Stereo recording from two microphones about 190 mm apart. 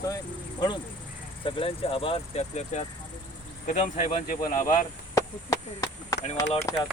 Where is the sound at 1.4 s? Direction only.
30° left (ahead or behind); by 4.6 s 45° left (ahead or behind).